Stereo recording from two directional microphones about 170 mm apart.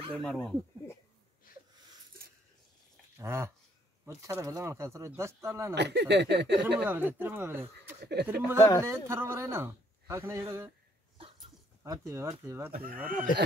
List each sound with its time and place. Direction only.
0.1 s speech: 5° left (ahead or behind)
1.5 s a sound: 55° left (ahead or behind)
3.2 s a man's voice: 15° right (ahead or behind)
5.8 s speech: 90° right
6.5 s a man's voice: 10° right (ahead or behind)
8.0 s speech: 75° right (ahead or behind)
8.5 s speech: 20° left (ahead or behind)
8.8 s a man's voice: 15° right (ahead or behind)
11.8 s a man's voice: 15° right (ahead or behind)